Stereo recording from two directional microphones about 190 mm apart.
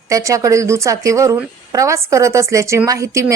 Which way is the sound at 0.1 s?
15° right (ahead or behind).